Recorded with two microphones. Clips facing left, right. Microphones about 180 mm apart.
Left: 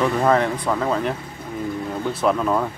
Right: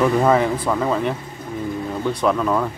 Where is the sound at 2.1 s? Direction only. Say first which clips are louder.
Even; 5° left (ahead or behind).